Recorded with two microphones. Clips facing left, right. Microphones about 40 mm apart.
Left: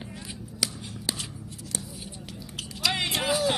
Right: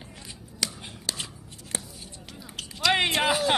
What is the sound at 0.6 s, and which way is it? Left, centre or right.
Scissors, centre.